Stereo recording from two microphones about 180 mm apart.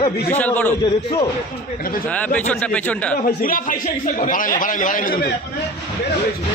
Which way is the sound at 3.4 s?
50° left (ahead or behind).